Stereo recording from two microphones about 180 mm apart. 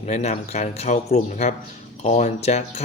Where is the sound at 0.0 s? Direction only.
40° left (ahead or behind).